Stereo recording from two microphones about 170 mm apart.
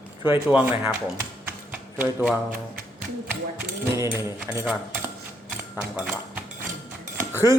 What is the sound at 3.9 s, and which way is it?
Speech, 20° right (ahead or behind).